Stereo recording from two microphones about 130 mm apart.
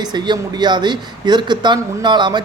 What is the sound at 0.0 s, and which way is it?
Speech, 35° right (ahead or behind).